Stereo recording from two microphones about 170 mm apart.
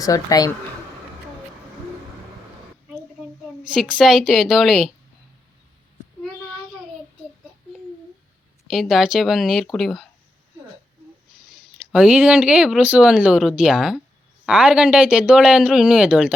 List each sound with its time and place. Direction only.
0.0 s speech: 20° left (ahead or behind)
3.6 s speech: 5° right (ahead or behind)
8.7 s speech: centre (ahead or behind)
11.9 s speech: 5° right (ahead or behind)